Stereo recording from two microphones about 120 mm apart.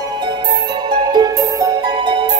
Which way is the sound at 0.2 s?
40° right (ahead or behind).